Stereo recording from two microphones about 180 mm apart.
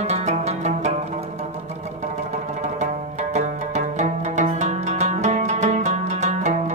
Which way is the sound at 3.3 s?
40° right (ahead or behind).